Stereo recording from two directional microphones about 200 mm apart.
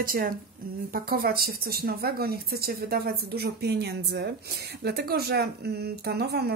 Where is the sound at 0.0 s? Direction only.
45° right (ahead or behind).